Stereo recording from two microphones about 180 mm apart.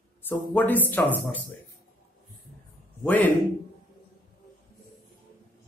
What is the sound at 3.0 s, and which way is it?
Speech, 5° left (ahead or behind).